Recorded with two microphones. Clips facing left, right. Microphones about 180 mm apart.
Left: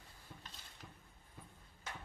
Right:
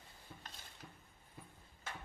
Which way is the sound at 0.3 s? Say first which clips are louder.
Even; 5° right (ahead or behind).